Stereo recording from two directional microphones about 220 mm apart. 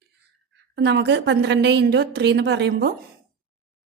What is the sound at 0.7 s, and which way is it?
A woman's voice, 50° right (ahead or behind).